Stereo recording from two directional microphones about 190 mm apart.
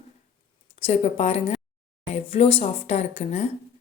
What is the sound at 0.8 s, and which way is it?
A woman's voice, 30° left (ahead or behind).